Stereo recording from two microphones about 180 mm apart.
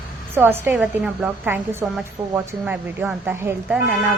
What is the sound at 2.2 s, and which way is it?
Speech, 25° right (ahead or behind).